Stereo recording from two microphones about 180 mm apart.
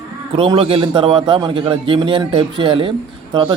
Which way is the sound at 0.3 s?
30° right (ahead or behind).